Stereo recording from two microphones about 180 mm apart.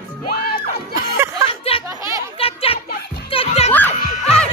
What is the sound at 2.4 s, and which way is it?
Music, 30° left (ahead or behind).